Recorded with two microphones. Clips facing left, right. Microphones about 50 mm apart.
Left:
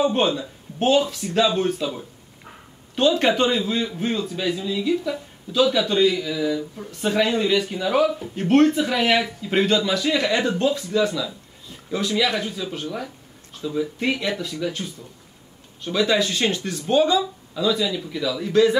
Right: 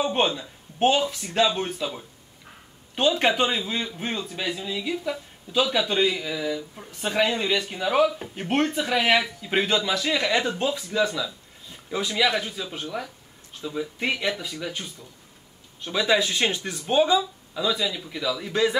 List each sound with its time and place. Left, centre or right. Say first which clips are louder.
0.0 s a man's voice: left 3 dB; centre
1.0 s a man's voice: left 2 dB; centre
3.0 s a man's voice: left 3 dB; centre